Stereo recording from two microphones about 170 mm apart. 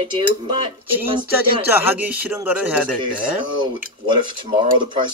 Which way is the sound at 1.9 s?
10° right (ahead or behind).